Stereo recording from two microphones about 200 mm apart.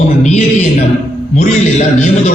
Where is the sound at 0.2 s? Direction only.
35° left (ahead or behind).